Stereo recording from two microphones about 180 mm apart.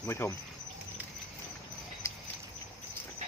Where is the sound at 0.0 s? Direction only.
15° left (ahead or behind).